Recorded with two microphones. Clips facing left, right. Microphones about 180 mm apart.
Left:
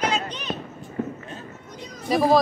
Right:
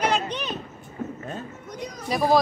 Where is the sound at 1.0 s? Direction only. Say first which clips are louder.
Left 4 dB; 65° left (ahead or behind).